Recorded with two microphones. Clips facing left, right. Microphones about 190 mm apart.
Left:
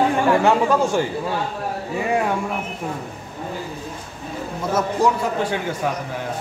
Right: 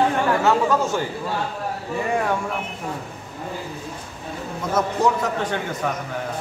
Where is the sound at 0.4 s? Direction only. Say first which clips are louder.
Left 2 dB; 10° left (ahead or behind).